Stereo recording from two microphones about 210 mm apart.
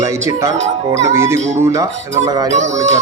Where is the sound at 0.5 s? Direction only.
35° right (ahead or behind).